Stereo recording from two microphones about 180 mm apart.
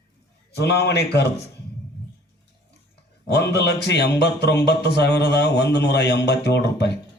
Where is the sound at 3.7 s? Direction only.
65° left (ahead or behind).